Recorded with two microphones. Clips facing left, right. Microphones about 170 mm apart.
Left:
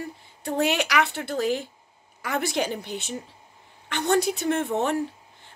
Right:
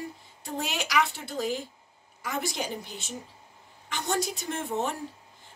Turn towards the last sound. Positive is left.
turn(degrees=65)  # may be behind; listen again after turning